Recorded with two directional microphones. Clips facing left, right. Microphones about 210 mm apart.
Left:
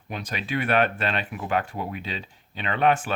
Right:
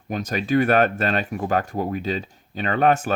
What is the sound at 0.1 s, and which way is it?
Speech, 45° right (ahead or behind).